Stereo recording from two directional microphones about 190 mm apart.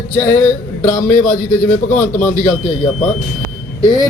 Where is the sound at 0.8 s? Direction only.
45° left (ahead or behind).